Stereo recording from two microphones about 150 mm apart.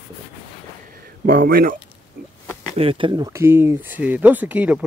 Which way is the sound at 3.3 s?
15° right (ahead or behind).